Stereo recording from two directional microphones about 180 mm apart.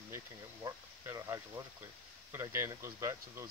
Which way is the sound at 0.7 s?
15° right (ahead or behind).